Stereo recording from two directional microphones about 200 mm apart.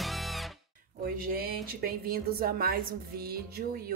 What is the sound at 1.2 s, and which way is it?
A woman's voice, 50° right (ahead or behind).